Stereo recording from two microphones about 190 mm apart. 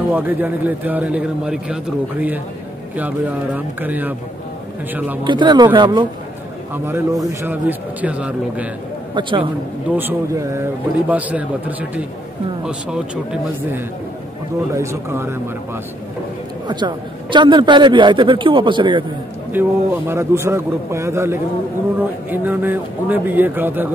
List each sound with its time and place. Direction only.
0.1 s a man's voice: 10° right (ahead or behind)
5.2 s a man's voice: 25° right (ahead or behind)
7.2 s a man's voice: 10° right (ahead or behind)
9.1 s a man's voice: 25° right (ahead or behind)
9.8 s a man's voice: 10° right (ahead or behind)
12.6 s a man's voice: 5° right (ahead or behind)
16.6 s a man's voice: 25° right (ahead or behind)
19.5 s a man's voice: 15° right (ahead or behind)